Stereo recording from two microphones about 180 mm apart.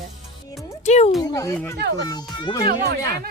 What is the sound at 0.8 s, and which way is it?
Speech, 40° left (ahead or behind).